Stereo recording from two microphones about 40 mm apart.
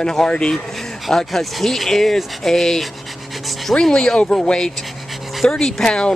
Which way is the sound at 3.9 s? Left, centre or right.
Centre.